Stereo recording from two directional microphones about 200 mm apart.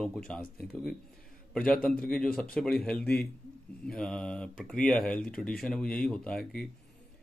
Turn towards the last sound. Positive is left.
turn(degrees=5)  # may be behind; listen again after turning